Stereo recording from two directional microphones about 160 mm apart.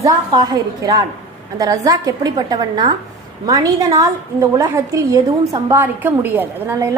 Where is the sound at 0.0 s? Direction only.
25° right (ahead or behind).